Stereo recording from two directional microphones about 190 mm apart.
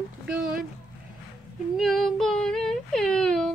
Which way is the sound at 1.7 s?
Centre (ahead or behind).